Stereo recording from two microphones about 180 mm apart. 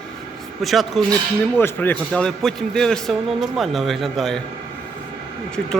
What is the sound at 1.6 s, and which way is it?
A man's voice, 10° left (ahead or behind).